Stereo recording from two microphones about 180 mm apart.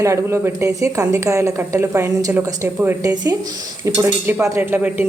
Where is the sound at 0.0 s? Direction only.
15° right (ahead or behind).